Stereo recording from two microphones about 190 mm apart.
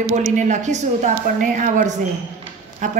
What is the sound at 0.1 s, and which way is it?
A woman's voice, 40° right (ahead or behind).